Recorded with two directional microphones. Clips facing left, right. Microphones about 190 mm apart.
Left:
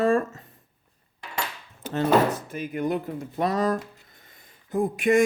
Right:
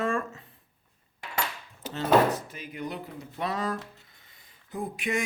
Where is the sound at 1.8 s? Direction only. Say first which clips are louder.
Left 7 dB; 50° left (ahead or behind).